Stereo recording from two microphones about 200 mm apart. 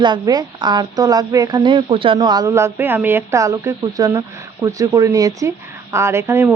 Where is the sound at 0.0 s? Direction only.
20° right (ahead or behind).